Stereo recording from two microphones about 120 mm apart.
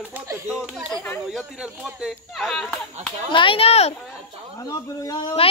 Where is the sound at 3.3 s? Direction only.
45° left (ahead or behind).